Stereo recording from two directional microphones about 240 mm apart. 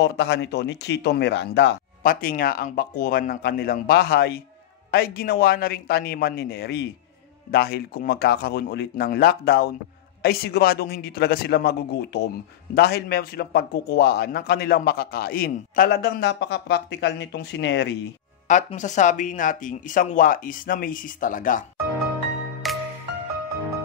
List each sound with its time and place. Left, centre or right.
0.0 s a man's voice: left
18.5 s a man's voice: left
22.6 s music: centre